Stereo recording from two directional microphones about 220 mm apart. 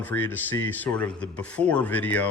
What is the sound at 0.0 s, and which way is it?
A man's voice, 10° left (ahead or behind).